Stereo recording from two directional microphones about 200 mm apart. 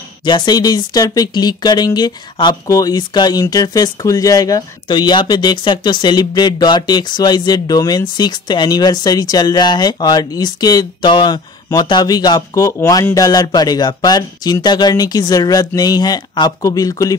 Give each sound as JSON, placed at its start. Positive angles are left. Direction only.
{"t": 0.2, "sound": "speech", "side_deg": 20}